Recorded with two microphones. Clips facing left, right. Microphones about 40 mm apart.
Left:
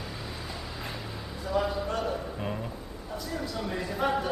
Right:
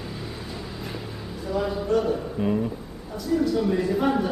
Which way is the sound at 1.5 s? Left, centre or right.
Centre.